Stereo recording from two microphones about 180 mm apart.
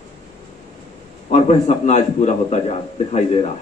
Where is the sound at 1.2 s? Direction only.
35° left (ahead or behind).